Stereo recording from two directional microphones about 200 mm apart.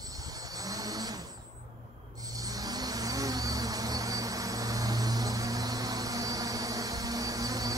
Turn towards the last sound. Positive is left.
turn(degrees=-20)  # may be behind; listen again after turning